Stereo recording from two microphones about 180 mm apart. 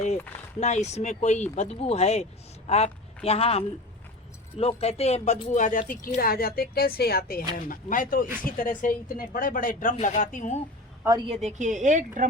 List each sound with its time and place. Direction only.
0.6 s a woman's voice: 40° left (ahead or behind)
11.4 s a woman's voice: 40° right (ahead or behind)